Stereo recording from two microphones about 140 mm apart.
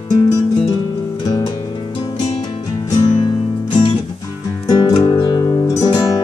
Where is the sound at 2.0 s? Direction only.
35° left (ahead or behind).